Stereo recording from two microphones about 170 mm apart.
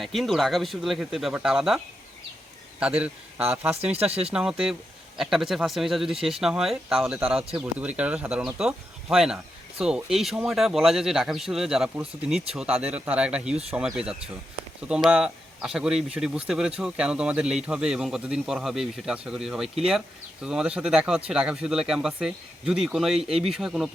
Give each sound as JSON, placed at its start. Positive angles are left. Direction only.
{"t": 0.0, "sound": "speech", "side_deg": 0}
{"t": 3.9, "sound": "speech", "side_deg": -35}
{"t": 4.3, "sound": "speech", "side_deg": -5}